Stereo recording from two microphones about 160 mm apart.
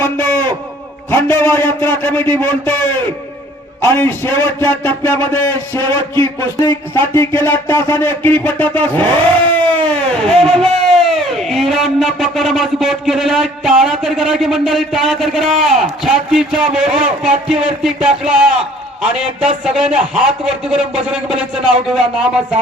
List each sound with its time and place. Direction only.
0.0 s a man's voice: 15° left (ahead or behind)
3.8 s a man's voice: 15° left (ahead or behind); by 22.3 s 5° right (ahead or behind)